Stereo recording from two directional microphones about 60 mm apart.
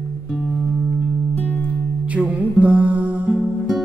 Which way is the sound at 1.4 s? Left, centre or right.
Left.